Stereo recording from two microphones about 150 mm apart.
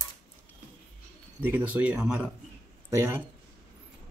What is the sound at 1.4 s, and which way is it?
Speech, 10° right (ahead or behind).